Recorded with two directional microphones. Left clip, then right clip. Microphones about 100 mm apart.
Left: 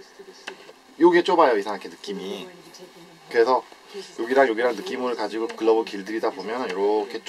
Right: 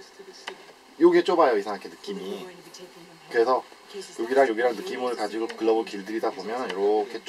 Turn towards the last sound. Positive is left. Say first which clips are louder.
# left 1 dB
turn(degrees=25)  # may be behind; listen again after turning